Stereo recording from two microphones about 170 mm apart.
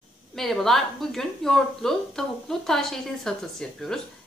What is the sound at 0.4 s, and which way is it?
A woman's voice, centre (ahead or behind).